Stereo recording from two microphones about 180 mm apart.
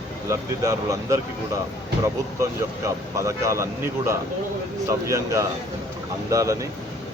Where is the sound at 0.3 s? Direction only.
15° right (ahead or behind).